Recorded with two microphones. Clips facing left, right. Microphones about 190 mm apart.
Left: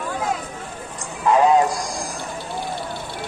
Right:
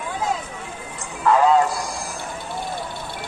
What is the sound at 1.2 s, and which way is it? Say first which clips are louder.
Music: left 1 dB; 15° left (ahead or behind).